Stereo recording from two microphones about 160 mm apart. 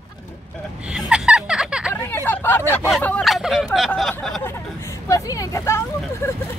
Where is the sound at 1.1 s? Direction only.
5° right (ahead or behind).